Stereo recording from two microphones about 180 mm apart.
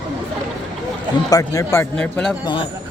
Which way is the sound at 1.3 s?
20° left (ahead or behind).